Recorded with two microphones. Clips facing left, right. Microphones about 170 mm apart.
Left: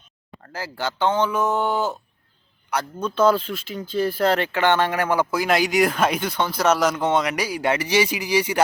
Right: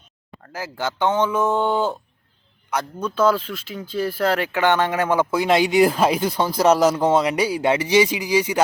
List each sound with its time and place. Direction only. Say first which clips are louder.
0.5 s speech: right 1 dB; 15° right (ahead or behind)
3.0 s speech: left 1 dB; 5° right (ahead or behind)